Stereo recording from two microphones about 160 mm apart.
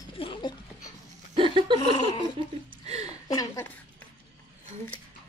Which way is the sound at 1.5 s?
30° right (ahead or behind).